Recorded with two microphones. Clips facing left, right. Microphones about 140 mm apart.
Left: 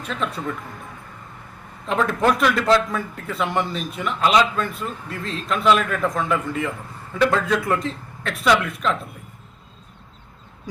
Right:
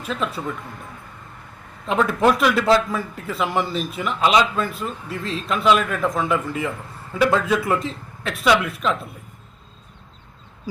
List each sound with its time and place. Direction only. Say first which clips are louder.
0.0 s a man's voice: right 1 dB; 5° right (ahead or behind)
1.9 s a man's voice: right 2 dB; 5° right (ahead or behind)